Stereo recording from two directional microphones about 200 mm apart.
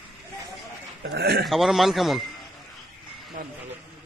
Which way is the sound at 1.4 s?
Centre (ahead or behind).